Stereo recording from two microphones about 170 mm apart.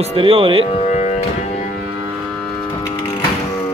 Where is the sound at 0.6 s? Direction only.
40° left (ahead or behind).